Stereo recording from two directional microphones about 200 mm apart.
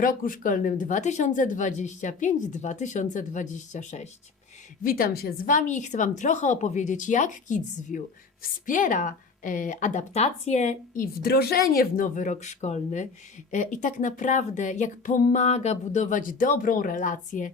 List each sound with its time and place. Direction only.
0.0 s a woman's voice: 45° left (ahead or behind)